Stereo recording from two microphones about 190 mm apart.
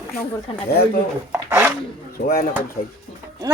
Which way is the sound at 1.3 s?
15° right (ahead or behind).